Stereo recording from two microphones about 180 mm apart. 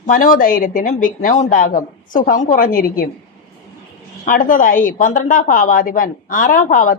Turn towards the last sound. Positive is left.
turn(degrees=50)  # may be behind; listen again after turning